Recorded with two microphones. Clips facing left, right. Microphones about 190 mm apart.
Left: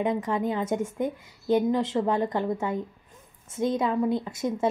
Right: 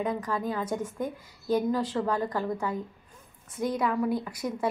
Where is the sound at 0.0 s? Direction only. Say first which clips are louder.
Left 4 dB; 25° left (ahead or behind).